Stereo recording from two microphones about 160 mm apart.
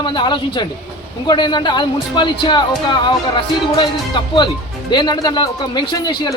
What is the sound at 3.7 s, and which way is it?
Speech, 30° left (ahead or behind).